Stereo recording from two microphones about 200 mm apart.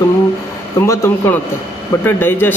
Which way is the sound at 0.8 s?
10° left (ahead or behind).